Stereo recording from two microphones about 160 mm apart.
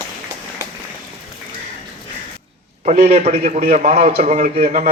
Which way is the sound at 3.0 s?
40° right (ahead or behind).